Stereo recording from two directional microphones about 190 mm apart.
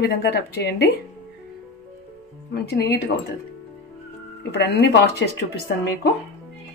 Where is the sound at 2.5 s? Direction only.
60° left (ahead or behind).